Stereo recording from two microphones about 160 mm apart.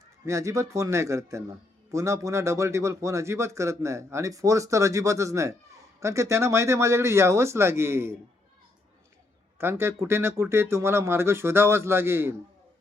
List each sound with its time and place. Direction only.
0.3 s a man's voice: 20° right (ahead or behind)
9.6 s speech: 15° right (ahead or behind)